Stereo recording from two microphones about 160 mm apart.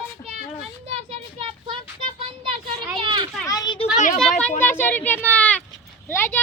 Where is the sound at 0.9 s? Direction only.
35° right (ahead or behind).